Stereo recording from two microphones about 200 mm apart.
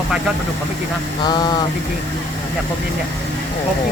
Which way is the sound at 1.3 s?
20° left (ahead or behind).